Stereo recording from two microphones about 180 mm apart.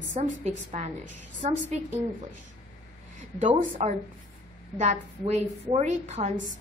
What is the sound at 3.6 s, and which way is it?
A woman's voice, 40° right (ahead or behind).